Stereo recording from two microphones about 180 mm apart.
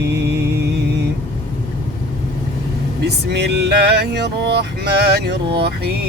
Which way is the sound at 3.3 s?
70° right (ahead or behind).